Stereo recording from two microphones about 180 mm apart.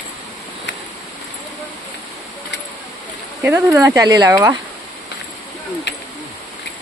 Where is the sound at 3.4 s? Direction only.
15° right (ahead or behind).